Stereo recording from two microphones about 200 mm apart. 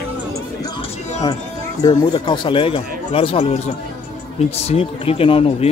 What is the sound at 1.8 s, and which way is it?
Speech, 20° left (ahead or behind).